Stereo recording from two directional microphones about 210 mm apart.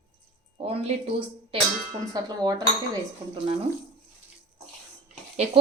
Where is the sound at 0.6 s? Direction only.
30° right (ahead or behind).